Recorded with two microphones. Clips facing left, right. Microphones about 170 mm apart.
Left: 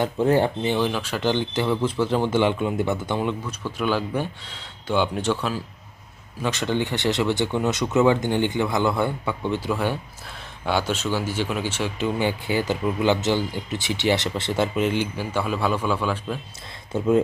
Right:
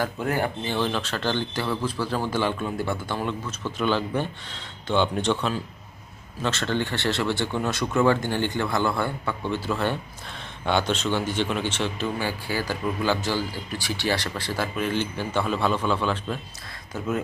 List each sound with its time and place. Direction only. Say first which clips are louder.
0.0 s speech: left 6 dB; 25° left (ahead or behind); by 16.4 s 10° left (ahead or behind)
16.9 s speech: left 8 dB; 25° left (ahead or behind)